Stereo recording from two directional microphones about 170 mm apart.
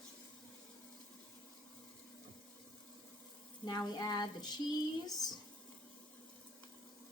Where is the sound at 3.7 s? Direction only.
25° left (ahead or behind).